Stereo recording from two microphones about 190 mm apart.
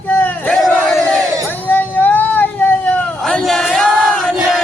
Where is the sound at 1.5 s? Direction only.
10° left (ahead or behind).